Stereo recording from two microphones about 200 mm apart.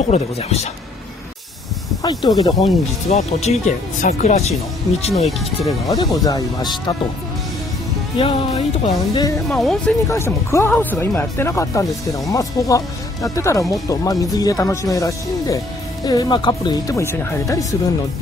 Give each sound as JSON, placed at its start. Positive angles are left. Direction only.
{"t": 0.1, "sound": "speech", "side_deg": 30}
{"t": 2.0, "sound": "speech", "side_deg": 20}
{"t": 2.6, "sound": "speech", "side_deg": 35}
{"t": 5.9, "sound": "speech", "side_deg": 20}
{"t": 8.2, "sound": "speech", "side_deg": 25}
{"t": 9.5, "sound": "speech", "side_deg": 0}
{"t": 10.0, "sound": "speech", "side_deg": 15}